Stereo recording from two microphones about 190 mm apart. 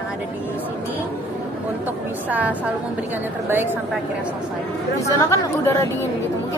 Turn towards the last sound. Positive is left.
turn(degrees=15)  # may be behind; listen again after turning